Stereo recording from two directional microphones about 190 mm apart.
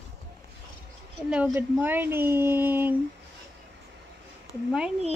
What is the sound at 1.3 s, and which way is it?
A woman's voice, 10° right (ahead or behind).